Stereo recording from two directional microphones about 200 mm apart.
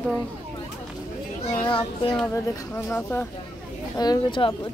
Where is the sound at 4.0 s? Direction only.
20° left (ahead or behind).